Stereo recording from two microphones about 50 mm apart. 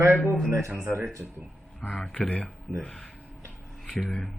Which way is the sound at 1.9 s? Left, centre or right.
Left.